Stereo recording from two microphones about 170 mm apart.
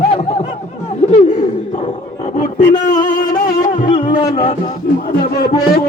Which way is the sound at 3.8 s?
30° left (ahead or behind).